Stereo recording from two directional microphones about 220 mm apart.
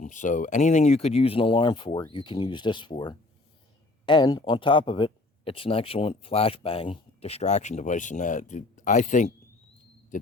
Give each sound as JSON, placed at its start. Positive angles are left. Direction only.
{"t": 0.0, "sound": "speech", "side_deg": 35}